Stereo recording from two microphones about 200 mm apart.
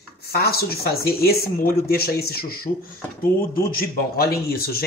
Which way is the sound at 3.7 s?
50° left (ahead or behind).